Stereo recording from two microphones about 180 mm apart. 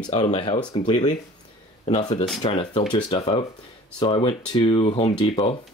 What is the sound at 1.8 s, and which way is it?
Speech, 35° left (ahead or behind).